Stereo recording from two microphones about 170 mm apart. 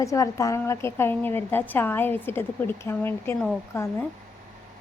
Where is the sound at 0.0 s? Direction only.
20° left (ahead or behind).